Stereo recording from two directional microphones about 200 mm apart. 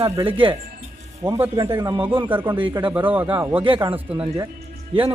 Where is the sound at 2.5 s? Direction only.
25° right (ahead or behind).